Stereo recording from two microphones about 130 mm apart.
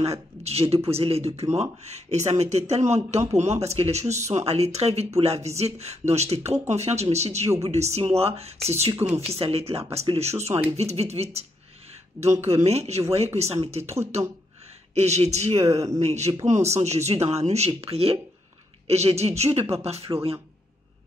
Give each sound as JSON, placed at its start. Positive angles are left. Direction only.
{"t": 0.0, "sound": "speech", "side_deg": -55}
{"t": 15.0, "sound": "speech", "side_deg": -55}
{"t": 15.6, "sound": "speech", "side_deg": -25}
{"t": 16.0, "sound": "speech", "side_deg": -60}